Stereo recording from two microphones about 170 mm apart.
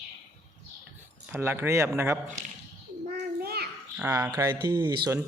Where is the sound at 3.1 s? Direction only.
65° right (ahead or behind).